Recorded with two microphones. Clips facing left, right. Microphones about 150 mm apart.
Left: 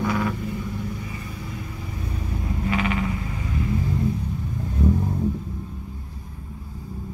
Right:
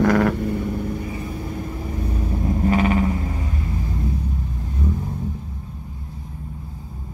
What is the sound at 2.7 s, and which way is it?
Vehicle, 40° right (ahead or behind).